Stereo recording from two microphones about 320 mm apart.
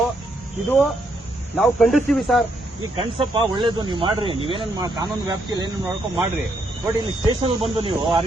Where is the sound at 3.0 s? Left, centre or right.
Centre.